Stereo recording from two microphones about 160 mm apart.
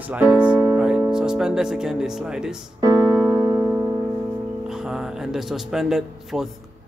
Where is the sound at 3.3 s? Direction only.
20° right (ahead or behind).